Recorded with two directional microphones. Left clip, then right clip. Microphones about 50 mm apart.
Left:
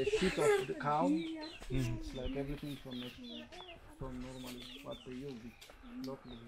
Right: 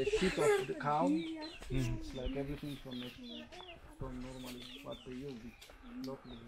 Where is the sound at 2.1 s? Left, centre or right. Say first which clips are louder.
Even; centre.